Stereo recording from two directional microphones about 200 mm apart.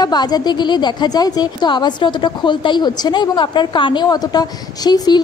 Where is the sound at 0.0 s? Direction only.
20° left (ahead or behind).